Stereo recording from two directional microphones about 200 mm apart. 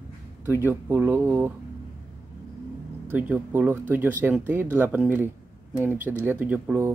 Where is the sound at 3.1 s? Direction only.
10° right (ahead or behind).